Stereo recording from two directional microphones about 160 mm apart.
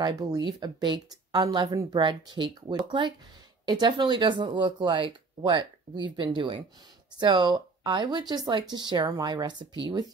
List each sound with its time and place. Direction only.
0.0 s speech: 25° right (ahead or behind)